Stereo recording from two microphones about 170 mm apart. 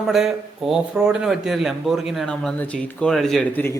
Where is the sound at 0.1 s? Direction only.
Centre (ahead or behind).